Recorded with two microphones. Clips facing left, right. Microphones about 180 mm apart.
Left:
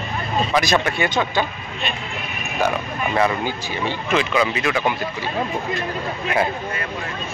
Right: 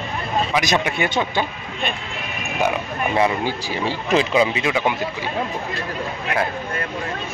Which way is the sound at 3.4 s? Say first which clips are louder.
Right 1 dB; 35° right (ahead or behind).